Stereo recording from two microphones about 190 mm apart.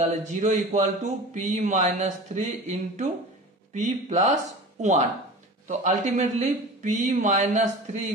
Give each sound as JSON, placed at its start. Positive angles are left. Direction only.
{"t": 0.0, "sound": "speech", "side_deg": -40}
{"t": 5.7, "sound": "speech", "side_deg": -40}